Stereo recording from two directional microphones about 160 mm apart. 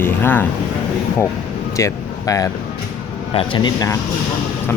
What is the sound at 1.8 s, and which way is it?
Speech, 20° left (ahead or behind).